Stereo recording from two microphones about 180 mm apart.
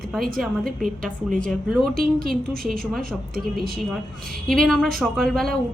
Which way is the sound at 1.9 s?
55° right (ahead or behind).